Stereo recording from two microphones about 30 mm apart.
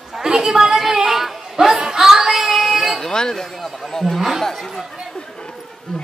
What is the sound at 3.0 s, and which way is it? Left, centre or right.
Speech, left.